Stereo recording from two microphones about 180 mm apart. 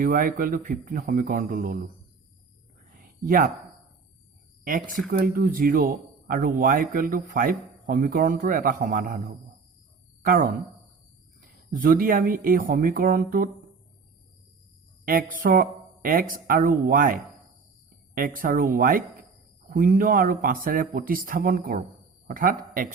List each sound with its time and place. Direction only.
0.0 s speech: 50° right (ahead or behind)
2.9 s a sound: 50° right (ahead or behind)
5.0 s speech: 50° right (ahead or behind)
10.2 s speech: 50° right (ahead or behind)
15.4 s speech: 50° right (ahead or behind)